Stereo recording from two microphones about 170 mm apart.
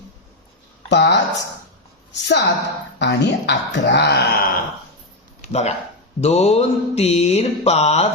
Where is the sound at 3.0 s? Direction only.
90° left; by 4.6 s 60° left (ahead or behind).